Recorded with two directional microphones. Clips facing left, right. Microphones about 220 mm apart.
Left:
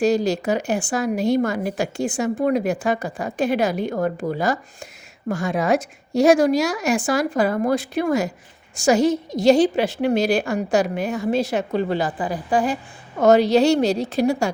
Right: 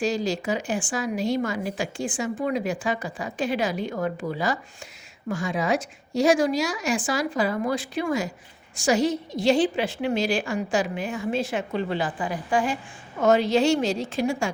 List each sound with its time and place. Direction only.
0.0 s a woman's voice: 60° left (ahead or behind); by 5.5 s 40° left (ahead or behind)
5.5 s a woman's voice: 60° left (ahead or behind); by 10.0 s 40° left (ahead or behind)
10.2 s a woman's voice: 60° left (ahead or behind)
10.8 s a woman's voice: 40° left (ahead or behind)